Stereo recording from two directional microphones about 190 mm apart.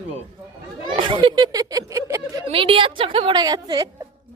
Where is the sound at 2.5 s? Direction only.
30° right (ahead or behind).